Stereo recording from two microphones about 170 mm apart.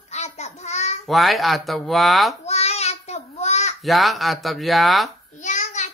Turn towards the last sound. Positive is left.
turn(degrees=45)  # may be behind; listen again after turning